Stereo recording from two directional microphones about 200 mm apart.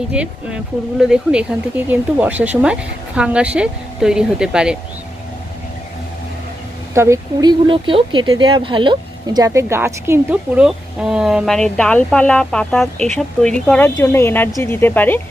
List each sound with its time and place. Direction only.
0.1 s a woman's voice: 5° right (ahead or behind)
6.9 s a woman's voice: 15° right (ahead or behind); by 15.2 s 10° left (ahead or behind)